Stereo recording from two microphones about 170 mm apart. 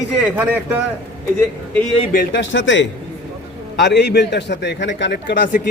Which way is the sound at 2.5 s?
90° left.